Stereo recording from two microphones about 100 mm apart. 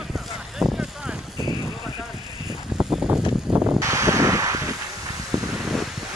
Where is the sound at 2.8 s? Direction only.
10° right (ahead or behind).